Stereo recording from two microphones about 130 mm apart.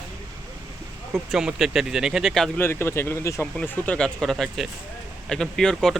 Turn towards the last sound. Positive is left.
turn(degrees=5)  # may be behind; listen again after turning